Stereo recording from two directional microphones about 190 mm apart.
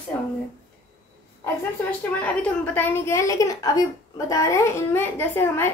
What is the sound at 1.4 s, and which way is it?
A woman's voice, 10° left (ahead or behind).